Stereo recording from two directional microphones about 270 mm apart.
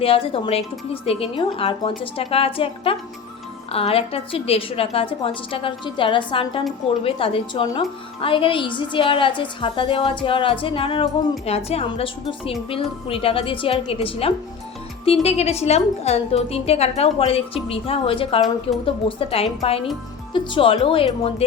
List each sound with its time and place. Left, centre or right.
0.0 s a woman's voice: centre